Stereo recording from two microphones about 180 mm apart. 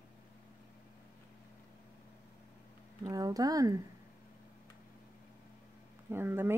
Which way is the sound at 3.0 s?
20° right (ahead or behind).